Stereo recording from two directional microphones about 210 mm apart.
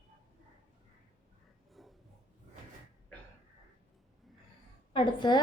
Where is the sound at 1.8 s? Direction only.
Centre (ahead or behind).